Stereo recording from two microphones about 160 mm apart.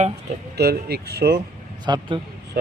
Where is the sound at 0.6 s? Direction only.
85° right.